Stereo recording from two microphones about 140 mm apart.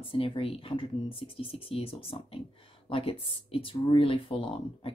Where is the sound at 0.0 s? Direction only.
40° left (ahead or behind).